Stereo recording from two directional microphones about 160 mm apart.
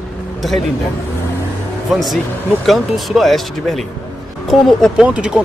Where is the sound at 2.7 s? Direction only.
Centre (ahead or behind).